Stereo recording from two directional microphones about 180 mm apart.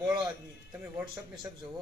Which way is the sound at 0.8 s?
15° right (ahead or behind).